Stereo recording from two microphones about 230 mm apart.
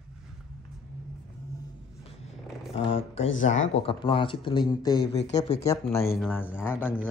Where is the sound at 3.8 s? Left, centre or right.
Left.